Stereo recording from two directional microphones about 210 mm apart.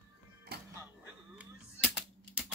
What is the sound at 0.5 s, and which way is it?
Music, 50° right (ahead or behind).